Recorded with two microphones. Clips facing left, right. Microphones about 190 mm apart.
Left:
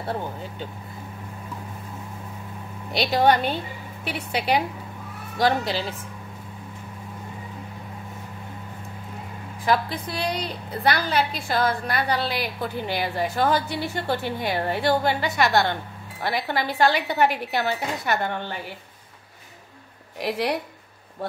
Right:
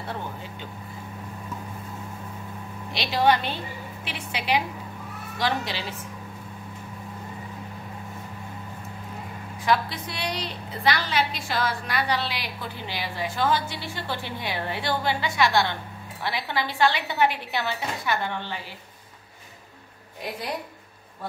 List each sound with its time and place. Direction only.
3.0 s a woman's voice: 45° left (ahead or behind)
9.7 s a woman's voice: 45° left (ahead or behind)
11.4 s a woman's voice: 50° left (ahead or behind)
20.2 s a woman's voice: 80° left